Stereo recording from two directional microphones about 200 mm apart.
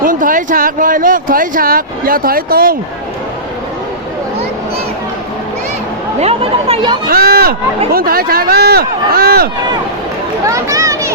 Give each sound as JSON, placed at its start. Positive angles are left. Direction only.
{"t": 0.0, "sound": "speech", "side_deg": -45}
{"t": 6.1, "sound": "speech", "side_deg": -30}
{"t": 7.1, "sound": "speech", "side_deg": -50}
{"t": 10.4, "sound": "speech", "side_deg": -15}